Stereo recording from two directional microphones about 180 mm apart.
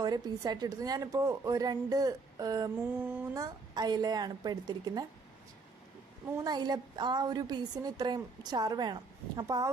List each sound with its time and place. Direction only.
0.0 s a woman's voice: 20° right (ahead or behind)
6.3 s a woman's voice: 20° right (ahead or behind)